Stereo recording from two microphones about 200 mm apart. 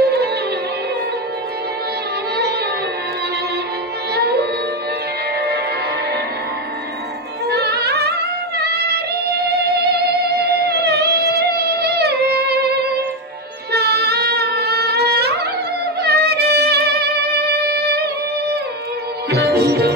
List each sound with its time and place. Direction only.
0.0 s music: 55° right (ahead or behind)
4.1 s music: 55° right (ahead or behind)
7.4 s music: 55° right (ahead or behind)
19.3 s music: 55° right (ahead or behind)